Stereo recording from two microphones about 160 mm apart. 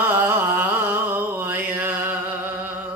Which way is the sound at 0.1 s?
15° right (ahead or behind).